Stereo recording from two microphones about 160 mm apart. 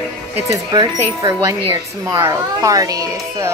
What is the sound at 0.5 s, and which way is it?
Speech, 20° right (ahead or behind).